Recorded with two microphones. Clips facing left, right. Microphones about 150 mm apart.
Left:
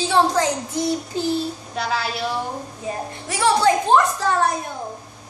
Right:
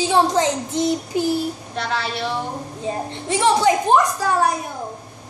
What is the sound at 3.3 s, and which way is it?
A woman's voice, 20° right (ahead or behind).